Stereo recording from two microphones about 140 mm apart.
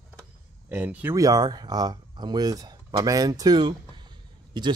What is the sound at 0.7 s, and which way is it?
Speech, 10° right (ahead or behind).